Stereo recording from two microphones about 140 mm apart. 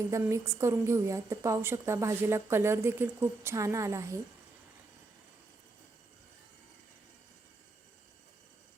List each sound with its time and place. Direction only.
0.1 s a woman's voice: 20° right (ahead or behind)